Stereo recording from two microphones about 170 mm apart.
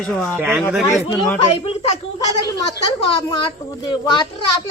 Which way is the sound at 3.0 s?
35° left (ahead or behind).